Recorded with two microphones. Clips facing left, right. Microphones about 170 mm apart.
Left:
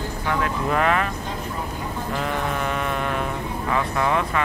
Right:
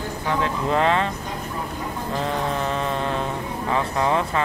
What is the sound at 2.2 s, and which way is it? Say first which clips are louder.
Mantra: right 2 dB; 30° right (ahead or behind).